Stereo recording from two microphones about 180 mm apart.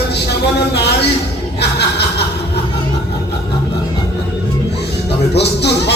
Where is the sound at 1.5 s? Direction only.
65° left (ahead or behind).